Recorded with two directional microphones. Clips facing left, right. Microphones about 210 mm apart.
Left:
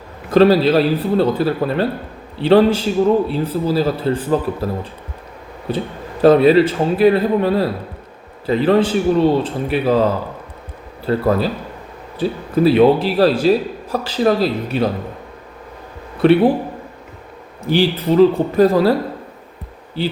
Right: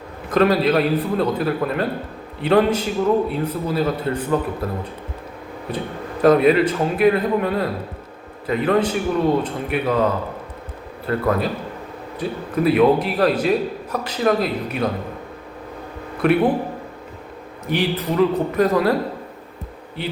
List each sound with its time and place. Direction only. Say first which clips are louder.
0.3 s a man's voice: left 5 dB; 30° left (ahead or behind)
5.7 s a man's voice: left 4 dB; 30° left (ahead or behind)
16.2 s speech: left 5 dB; 30° left (ahead or behind)
17.7 s a man's voice: left 6 dB; 30° left (ahead or behind)
20.0 s speech: left 6 dB; 30° left (ahead or behind)